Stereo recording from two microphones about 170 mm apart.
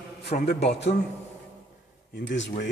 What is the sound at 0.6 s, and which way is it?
Speech, 90° left.